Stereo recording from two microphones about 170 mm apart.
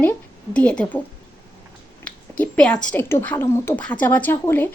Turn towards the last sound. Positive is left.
turn(degrees=15)  # may be behind; listen again after turning